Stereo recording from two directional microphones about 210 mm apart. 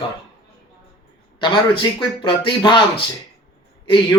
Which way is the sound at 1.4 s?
20° left (ahead or behind).